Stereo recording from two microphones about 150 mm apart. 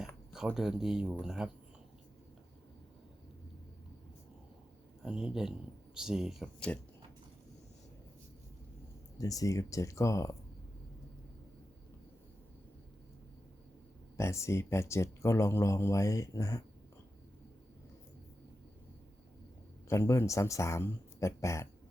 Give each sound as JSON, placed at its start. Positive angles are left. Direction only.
{"t": 0.3, "sound": "speech", "side_deg": -5}
{"t": 5.0, "sound": "speech", "side_deg": -5}
{"t": 9.1, "sound": "speech", "side_deg": 25}
{"t": 14.2, "sound": "speech", "side_deg": 20}
{"t": 19.9, "sound": "speech", "side_deg": 20}